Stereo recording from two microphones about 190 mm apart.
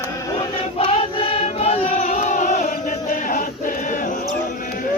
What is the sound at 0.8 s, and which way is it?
Choir, 30° left (ahead or behind).